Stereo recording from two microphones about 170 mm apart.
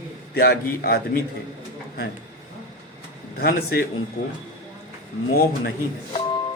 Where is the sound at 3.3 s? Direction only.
65° left (ahead or behind).